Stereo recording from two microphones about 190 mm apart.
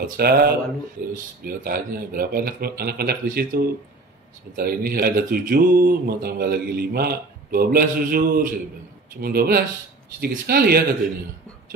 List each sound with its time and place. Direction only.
0.0 s speech: 55° right (ahead or behind)